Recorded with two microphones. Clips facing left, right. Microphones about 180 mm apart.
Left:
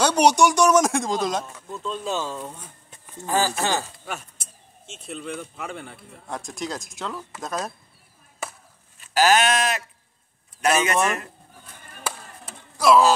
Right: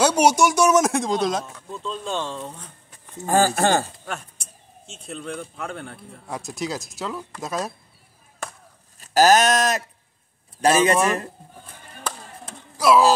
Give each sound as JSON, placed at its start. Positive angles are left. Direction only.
{"t": 0.0, "sound": "speech", "side_deg": -5}
{"t": 3.3, "sound": "speech", "side_deg": -50}
{"t": 4.0, "sound": "a sound", "side_deg": 5}
{"t": 4.9, "sound": "speech", "side_deg": 0}
{"t": 8.4, "sound": "chop", "side_deg": 5}
{"t": 9.0, "sound": "a man's voice", "side_deg": -40}
{"t": 12.0, "sound": "chop", "side_deg": 0}